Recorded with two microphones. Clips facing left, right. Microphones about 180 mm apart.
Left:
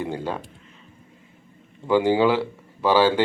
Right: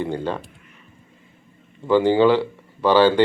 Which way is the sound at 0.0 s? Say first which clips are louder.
Right 3 dB; 10° left (ahead or behind).